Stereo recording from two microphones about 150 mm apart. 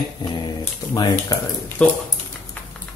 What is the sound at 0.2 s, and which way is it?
Speech, 25° left (ahead or behind).